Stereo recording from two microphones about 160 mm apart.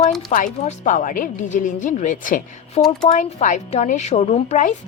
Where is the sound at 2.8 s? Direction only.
40° left (ahead or behind).